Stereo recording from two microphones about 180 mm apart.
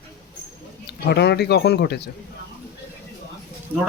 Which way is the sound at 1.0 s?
65° left (ahead or behind).